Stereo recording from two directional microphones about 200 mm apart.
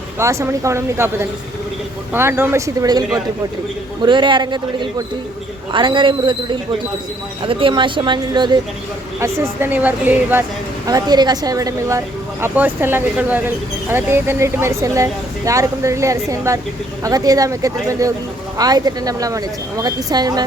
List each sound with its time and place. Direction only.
0.2 s speech: 15° right (ahead or behind)
10.8 s speech: 20° right (ahead or behind)